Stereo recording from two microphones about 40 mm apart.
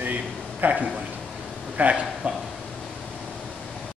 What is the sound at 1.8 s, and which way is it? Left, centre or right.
Speech, right.